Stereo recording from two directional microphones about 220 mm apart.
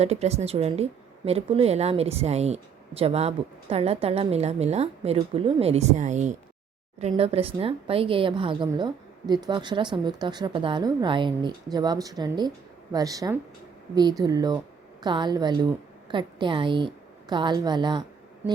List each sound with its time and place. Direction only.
0.0 s a woman's voice: 30° right (ahead or behind)